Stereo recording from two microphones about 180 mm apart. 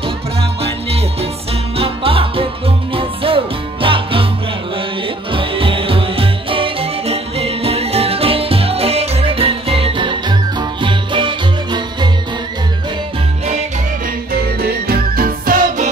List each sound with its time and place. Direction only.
1.8 s music: 30° right (ahead or behind)
5.3 s music: 30° right (ahead or behind)
14.3 s music: 60° right (ahead or behind)